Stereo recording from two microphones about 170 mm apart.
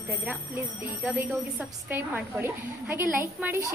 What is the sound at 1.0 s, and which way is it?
A woman's voice, 5° right (ahead or behind).